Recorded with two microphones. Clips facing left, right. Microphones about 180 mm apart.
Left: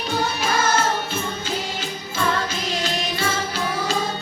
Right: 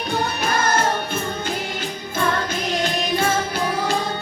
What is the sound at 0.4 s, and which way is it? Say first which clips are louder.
Music: right 1 dB; 55° right (ahead or behind).